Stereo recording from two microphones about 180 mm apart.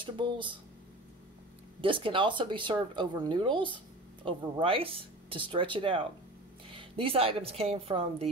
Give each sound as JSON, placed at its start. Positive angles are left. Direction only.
{"t": 0.0, "sound": "speech", "side_deg": -25}
{"t": 1.8, "sound": "speech", "side_deg": -30}